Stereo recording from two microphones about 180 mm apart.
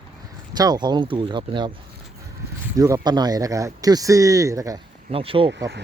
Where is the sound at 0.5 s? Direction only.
20° right (ahead or behind).